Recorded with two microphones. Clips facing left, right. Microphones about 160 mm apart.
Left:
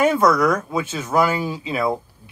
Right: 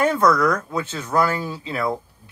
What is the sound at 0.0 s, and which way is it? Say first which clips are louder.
Speech: left 1 dB; 15° left (ahead or behind).